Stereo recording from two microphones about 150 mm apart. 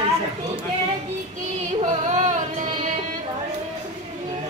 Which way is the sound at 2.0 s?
55° right (ahead or behind).